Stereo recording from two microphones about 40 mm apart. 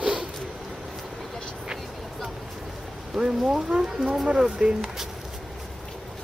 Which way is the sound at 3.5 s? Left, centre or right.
Centre.